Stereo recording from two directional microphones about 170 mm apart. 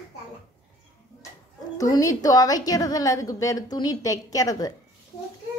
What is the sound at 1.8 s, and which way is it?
A woman's voice, 20° left (ahead or behind).